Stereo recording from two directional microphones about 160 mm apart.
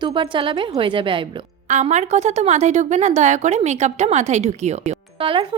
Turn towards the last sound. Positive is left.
turn(degrees=-35)  # may be behind; listen again after turning